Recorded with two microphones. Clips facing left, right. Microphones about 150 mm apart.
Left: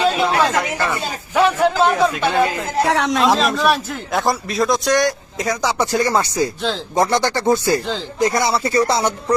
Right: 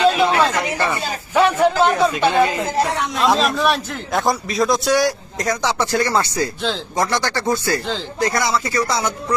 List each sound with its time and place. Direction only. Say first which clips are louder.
0.0 s a sound: right 1 dB; centre (ahead or behind)
0.6 s a man's voice: even; centre (ahead or behind)
2.8 s speech: left 4 dB; 90° left
3.2 s a man's voice: left 1 dB; centre (ahead or behind)
5.6 s speech: left 2 dB; 15° left (ahead or behind)